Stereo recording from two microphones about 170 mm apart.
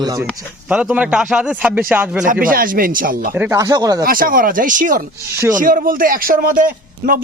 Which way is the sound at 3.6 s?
20° right (ahead or behind).